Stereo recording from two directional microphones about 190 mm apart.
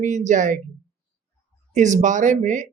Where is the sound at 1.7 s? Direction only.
40° right (ahead or behind).